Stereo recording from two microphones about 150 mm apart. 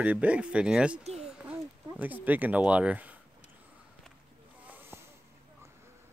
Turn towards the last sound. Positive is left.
turn(degrees=-15)  # may be behind; listen again after turning